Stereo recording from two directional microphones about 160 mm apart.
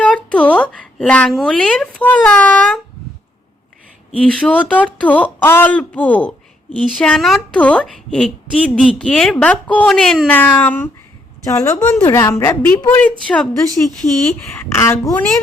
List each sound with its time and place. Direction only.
0.0 s speech: 5° left (ahead or behind)
4.1 s speech: 5° left (ahead or behind)
11.4 s a woman's voice: 20° left (ahead or behind)
11.8 s speech: 10° left (ahead or behind)